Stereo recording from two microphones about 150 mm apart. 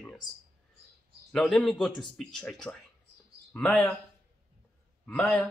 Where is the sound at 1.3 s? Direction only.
5° left (ahead or behind).